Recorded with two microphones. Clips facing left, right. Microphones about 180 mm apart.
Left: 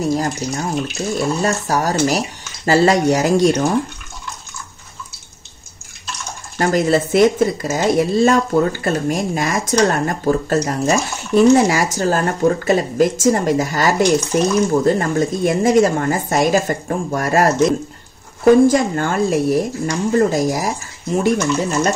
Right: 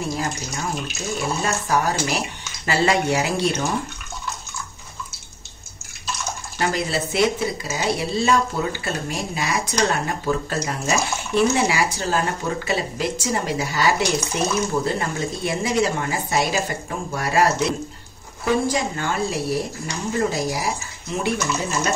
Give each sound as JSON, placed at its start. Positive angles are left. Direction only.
{"t": 0.0, "sound": "speech", "side_deg": 40}
{"t": 6.6, "sound": "speech", "side_deg": 45}